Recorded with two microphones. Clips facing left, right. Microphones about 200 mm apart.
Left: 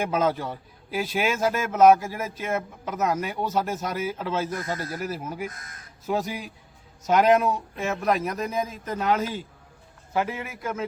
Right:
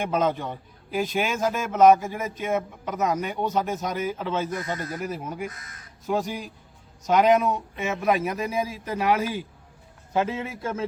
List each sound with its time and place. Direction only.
0.0 s a man's voice: 5° left (ahead or behind)
5.5 s speech: 50° left (ahead or behind)
6.1 s a man's voice: 5° left (ahead or behind); by 9.4 s 10° right (ahead or behind)
10.1 s a man's voice: 20° right (ahead or behind)